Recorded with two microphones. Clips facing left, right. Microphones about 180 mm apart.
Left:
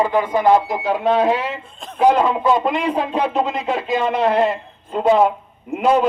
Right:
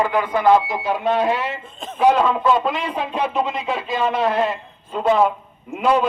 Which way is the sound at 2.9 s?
40° left (ahead or behind).